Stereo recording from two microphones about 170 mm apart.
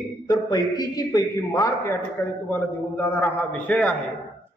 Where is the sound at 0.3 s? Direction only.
20° left (ahead or behind).